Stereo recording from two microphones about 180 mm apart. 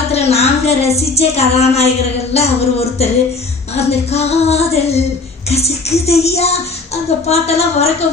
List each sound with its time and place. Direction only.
0.1 s a woman's voice: 35° left (ahead or behind)
0.9 s female singing: 35° left (ahead or behind)